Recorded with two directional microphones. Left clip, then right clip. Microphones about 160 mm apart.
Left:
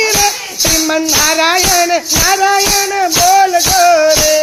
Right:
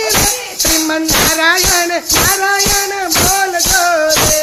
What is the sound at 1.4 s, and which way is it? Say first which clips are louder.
Music: left 1 dB; 5° left (ahead or behind).